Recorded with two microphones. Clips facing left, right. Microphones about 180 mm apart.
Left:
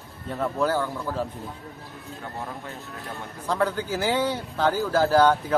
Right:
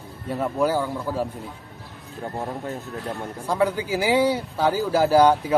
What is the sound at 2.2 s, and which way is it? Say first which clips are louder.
Speech: right 7 dB; 30° right (ahead or behind).